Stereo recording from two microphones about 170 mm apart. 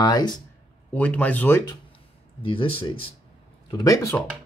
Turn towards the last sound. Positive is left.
turn(degrees=20)  # may be behind; listen again after turning